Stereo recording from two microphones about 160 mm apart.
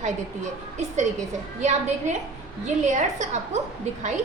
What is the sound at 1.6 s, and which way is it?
A woman's voice, 50° right (ahead or behind).